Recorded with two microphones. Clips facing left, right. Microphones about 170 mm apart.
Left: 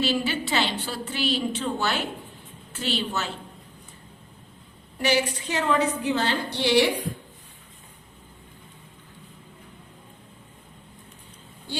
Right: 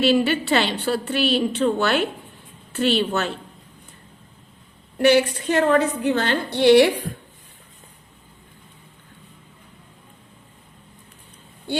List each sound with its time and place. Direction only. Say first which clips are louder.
0.0 s a woman's voice: right 7 dB; 65° right (ahead or behind)
4.9 s a woman's voice: right 8 dB; 60° right (ahead or behind)